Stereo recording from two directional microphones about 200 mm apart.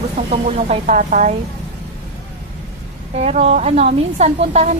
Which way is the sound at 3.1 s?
30° right (ahead or behind).